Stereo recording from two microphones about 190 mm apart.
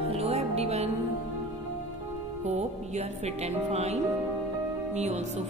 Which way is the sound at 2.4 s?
35° right (ahead or behind).